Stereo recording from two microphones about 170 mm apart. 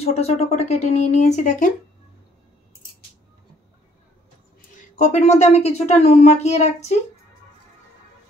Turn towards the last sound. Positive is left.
turn(degrees=40)  # may be behind; listen again after turning